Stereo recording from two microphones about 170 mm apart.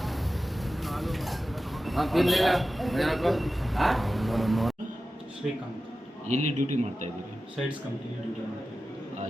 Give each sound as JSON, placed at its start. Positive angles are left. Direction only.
{"t": 0.8, "sound": "vehicle", "side_deg": 0}
{"t": 1.8, "sound": "a man's voice", "side_deg": 0}
{"t": 6.2, "sound": "a man's voice", "side_deg": -45}